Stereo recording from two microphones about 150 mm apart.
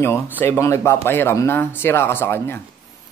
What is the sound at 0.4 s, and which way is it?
Speech, 20° left (ahead or behind).